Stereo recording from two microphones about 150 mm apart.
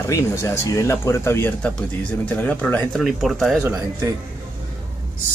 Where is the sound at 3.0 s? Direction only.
Centre (ahead or behind).